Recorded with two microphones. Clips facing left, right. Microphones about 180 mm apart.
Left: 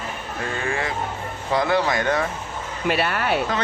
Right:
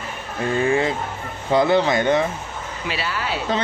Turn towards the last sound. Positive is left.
turn(degrees=60)  # may be behind; listen again after turning